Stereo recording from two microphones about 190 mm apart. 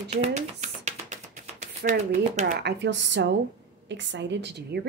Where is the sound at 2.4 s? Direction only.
70° right (ahead or behind).